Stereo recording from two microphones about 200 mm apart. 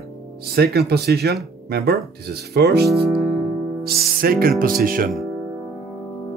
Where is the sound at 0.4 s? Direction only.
55° right (ahead or behind).